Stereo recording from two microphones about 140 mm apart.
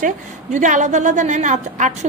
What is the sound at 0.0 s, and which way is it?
A woman's voice, 60° right (ahead or behind).